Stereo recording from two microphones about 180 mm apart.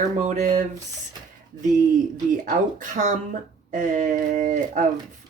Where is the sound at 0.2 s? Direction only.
40° right (ahead or behind).